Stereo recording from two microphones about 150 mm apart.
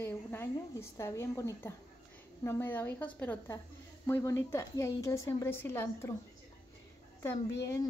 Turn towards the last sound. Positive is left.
turn(degrees=20)  # may be behind; listen again after turning